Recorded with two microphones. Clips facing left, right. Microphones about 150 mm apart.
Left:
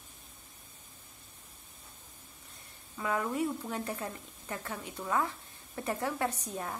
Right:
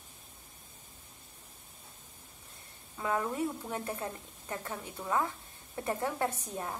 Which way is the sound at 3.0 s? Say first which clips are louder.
Even; 25° right (ahead or behind).